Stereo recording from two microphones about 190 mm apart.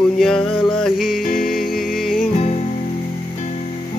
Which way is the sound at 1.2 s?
50° left (ahead or behind).